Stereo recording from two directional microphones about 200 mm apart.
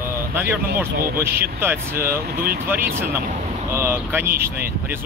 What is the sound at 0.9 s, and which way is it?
Speech, 50° right (ahead or behind).